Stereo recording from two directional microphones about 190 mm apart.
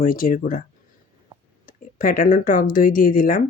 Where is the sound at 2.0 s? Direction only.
45° left (ahead or behind).